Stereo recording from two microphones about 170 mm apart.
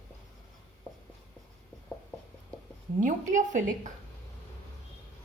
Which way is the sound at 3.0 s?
50° right (ahead or behind).